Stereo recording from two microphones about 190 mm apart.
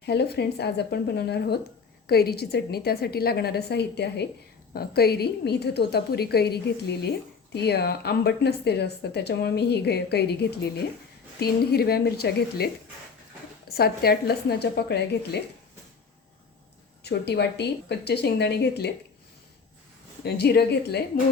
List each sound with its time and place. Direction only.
0.0 s speech: 60° left (ahead or behind)
17.0 s speech: 60° left (ahead or behind)
20.2 s speech: 55° left (ahead or behind)